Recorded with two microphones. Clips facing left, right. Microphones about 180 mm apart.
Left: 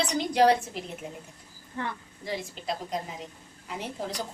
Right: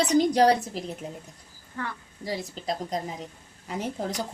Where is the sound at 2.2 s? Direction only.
40° right (ahead or behind).